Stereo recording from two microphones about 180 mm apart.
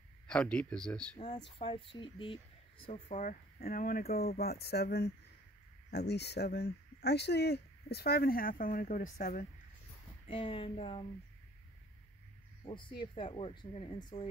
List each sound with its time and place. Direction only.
0.3 s speech: 5° left (ahead or behind)
1.2 s speech: 25° left (ahead or behind)
2.9 s speech: 40° left (ahead or behind)
10.2 s speech: 30° left (ahead or behind)
12.6 s speech: 25° left (ahead or behind)